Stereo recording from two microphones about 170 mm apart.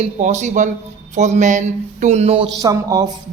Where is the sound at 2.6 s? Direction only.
20° right (ahead or behind).